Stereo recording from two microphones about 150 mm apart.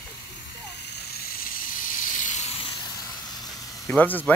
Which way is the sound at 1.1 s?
90° left.